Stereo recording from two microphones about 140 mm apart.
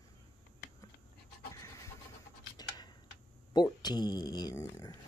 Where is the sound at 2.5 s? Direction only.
30° left (ahead or behind).